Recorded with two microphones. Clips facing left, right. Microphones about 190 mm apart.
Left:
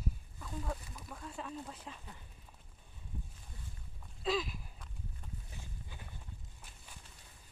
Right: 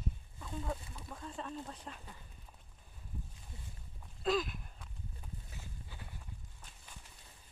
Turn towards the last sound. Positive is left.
turn(degrees=15)  # may be behind; listen again after turning